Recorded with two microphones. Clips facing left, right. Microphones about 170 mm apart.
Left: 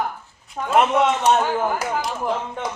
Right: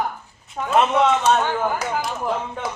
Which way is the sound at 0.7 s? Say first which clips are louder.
Even; 15° left (ahead or behind).